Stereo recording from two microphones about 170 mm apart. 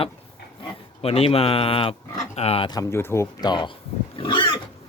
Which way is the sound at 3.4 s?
25° left (ahead or behind).